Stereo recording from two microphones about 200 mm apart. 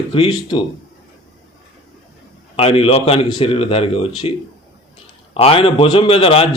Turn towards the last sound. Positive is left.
turn(degrees=30)  # may be behind; listen again after turning